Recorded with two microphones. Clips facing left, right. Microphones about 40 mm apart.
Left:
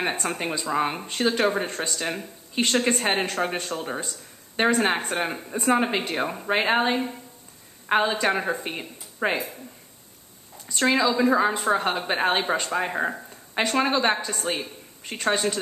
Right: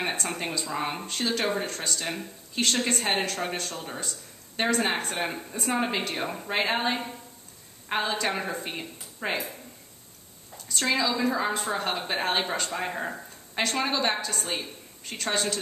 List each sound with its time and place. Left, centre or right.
0.1 s a woman's voice: left
1.1 s a woman's voice: left
11.5 s a woman's voice: left